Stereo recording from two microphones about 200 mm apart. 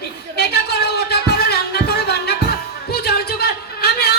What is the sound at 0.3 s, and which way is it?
Music, 55° left (ahead or behind).